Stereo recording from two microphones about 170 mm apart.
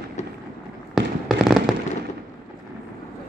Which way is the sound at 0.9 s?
Centre (ahead or behind).